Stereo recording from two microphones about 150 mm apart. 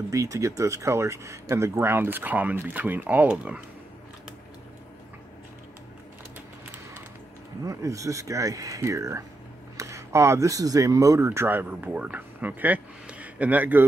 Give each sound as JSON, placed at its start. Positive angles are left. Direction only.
{"t": 0.1, "sound": "speech", "side_deg": -20}
{"t": 7.6, "sound": "speech", "side_deg": -20}